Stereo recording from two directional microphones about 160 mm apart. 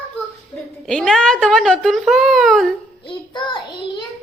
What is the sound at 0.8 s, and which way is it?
A woman's voice, 5° left (ahead or behind).